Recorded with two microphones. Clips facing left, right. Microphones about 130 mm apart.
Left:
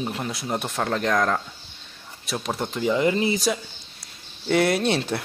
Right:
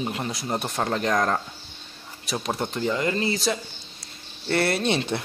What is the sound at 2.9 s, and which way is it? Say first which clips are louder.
Speech: left 5 dB; 15° left (ahead or behind).